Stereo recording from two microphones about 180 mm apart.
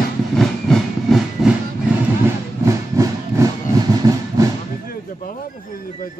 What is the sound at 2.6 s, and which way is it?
Train, 20° right (ahead or behind).